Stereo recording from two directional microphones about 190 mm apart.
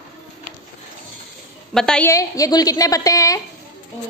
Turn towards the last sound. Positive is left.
turn(degrees=15)  # may be behind; listen again after turning